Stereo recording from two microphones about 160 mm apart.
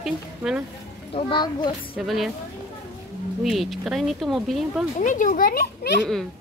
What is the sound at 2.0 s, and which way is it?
Speech, centre (ahead or behind).